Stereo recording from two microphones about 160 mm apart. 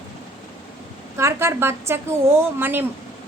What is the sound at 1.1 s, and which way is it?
A woman's voice, 15° right (ahead or behind).